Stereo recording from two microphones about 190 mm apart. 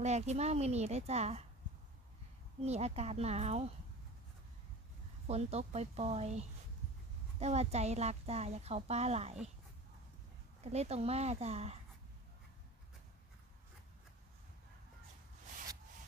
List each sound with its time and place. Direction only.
0.0 s a woman's voice: 35° right (ahead or behind)
2.6 s a woman's voice: 35° right (ahead or behind)
5.2 s a woman's voice: 35° right (ahead or behind)
10.6 s a woman's voice: 35° right (ahead or behind)